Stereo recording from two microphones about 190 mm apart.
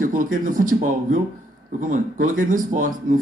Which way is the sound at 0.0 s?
45° right (ahead or behind).